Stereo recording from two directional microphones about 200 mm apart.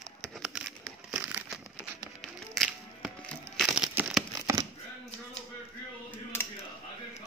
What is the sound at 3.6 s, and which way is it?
Crumpling, centre (ahead or behind).